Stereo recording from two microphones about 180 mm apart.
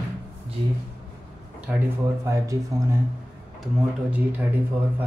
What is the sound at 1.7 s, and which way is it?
Speech, 5° right (ahead or behind).